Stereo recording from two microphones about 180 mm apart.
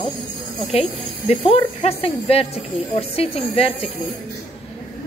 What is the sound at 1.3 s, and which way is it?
Speech, 35° left (ahead or behind).